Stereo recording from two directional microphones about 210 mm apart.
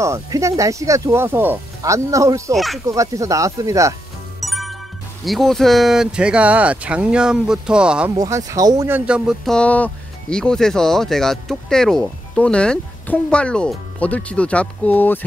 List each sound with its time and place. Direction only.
0.0 s speech: 15° right (ahead or behind)
2.5 s speech: centre (ahead or behind)
2.9 s speech: 15° right (ahead or behind)
4.4 s music: centre (ahead or behind)
5.2 s speech: centre (ahead or behind)
8.2 s speech: 15° right (ahead or behind); by 15.1 s 10° left (ahead or behind)